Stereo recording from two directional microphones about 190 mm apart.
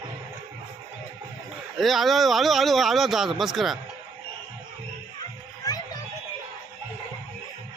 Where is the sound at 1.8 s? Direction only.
Centre (ahead or behind).